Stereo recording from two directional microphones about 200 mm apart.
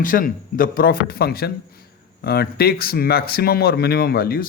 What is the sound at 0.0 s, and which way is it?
Speech, 45° left (ahead or behind).